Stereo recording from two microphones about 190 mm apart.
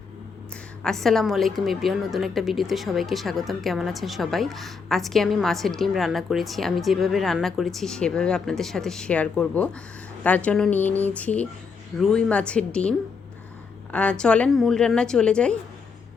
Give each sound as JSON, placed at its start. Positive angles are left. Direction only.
{"t": 0.8, "sound": "a woman's voice", "side_deg": 0}
{"t": 13.9, "sound": "a woman's voice", "side_deg": 5}